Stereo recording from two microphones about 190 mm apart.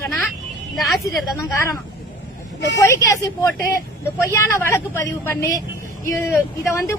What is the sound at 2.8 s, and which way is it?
A woman's voice, 15° left (ahead or behind).